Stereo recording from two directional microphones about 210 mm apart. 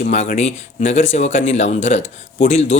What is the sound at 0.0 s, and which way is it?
Speech, 35° left (ahead or behind).